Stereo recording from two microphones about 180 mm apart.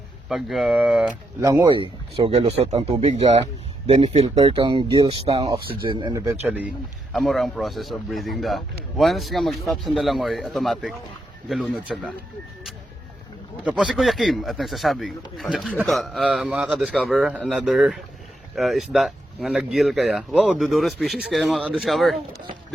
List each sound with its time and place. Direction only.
0.3 s speech: centre (ahead or behind)
1.4 s speech: 20° right (ahead or behind)
5.5 s speech: 55° right (ahead or behind)
5.8 s speech: 25° right (ahead or behind)
7.1 s speech: centre (ahead or behind)
13.7 s speech: centre (ahead or behind)